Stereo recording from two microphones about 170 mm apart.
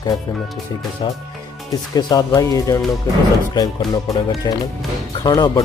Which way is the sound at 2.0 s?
25° left (ahead or behind).